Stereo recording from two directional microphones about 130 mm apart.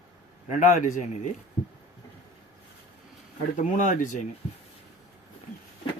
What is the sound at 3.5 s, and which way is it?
Speech, 70° left (ahead or behind).